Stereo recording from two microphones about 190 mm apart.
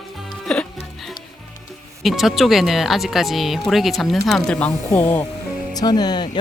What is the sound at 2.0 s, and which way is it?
Speech, centre (ahead or behind).